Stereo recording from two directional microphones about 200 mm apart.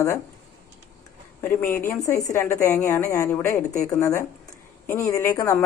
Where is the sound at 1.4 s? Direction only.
10° left (ahead or behind).